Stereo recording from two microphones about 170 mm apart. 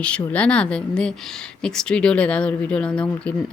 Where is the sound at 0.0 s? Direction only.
5° left (ahead or behind).